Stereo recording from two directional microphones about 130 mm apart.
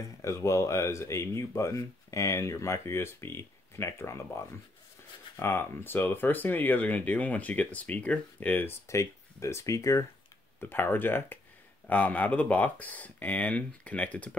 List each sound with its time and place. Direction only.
0.2 s speech: 25° left (ahead or behind)